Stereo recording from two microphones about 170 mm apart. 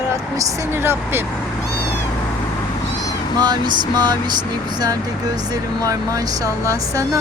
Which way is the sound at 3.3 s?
25° right (ahead or behind).